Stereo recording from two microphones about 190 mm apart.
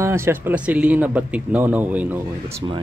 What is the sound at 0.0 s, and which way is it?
Speech, 15° right (ahead or behind).